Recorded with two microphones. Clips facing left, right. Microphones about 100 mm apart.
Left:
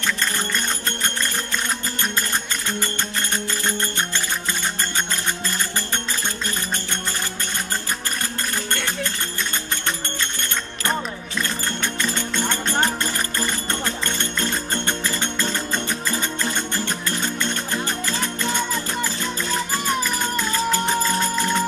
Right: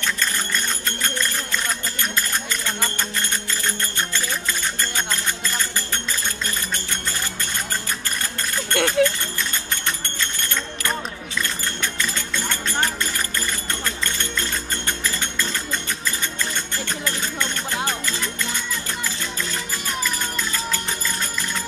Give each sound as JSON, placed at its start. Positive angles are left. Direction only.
{"t": 3.6, "sound": "music", "side_deg": 30}
{"t": 8.7, "sound": "a sound", "side_deg": -65}
{"t": 11.8, "sound": "music", "side_deg": 30}